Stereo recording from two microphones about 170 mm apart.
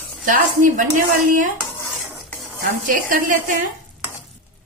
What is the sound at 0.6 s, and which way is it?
Speech, 50° right (ahead or behind).